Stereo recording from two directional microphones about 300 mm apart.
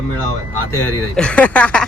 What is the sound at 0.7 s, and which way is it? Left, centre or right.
Speech, centre.